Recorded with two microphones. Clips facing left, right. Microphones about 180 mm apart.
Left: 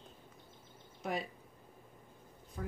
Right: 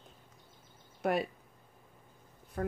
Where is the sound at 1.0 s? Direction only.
65° right (ahead or behind).